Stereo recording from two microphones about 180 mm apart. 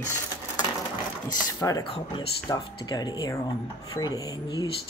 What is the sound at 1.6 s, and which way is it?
Speech, 20° left (ahead or behind).